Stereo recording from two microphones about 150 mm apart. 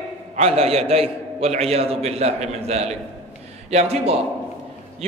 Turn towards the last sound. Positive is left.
turn(degrees=-45)  # may be behind; listen again after turning